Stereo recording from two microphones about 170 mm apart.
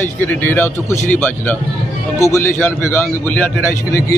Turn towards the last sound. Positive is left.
turn(degrees=10)  # may be behind; listen again after turning